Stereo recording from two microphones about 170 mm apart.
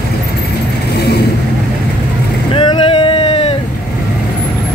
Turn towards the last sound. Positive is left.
turn(degrees=35)  # may be behind; listen again after turning